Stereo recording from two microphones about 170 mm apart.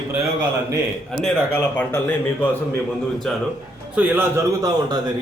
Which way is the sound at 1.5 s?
10° left (ahead or behind).